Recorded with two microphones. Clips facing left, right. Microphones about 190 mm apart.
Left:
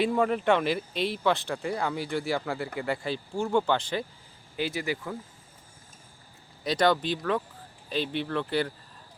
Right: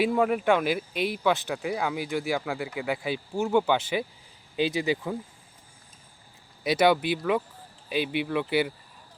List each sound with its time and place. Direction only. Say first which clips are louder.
0.0 s speech: right 1 dB; 5° right (ahead or behind)
6.7 s speech: right 2 dB; 10° right (ahead or behind)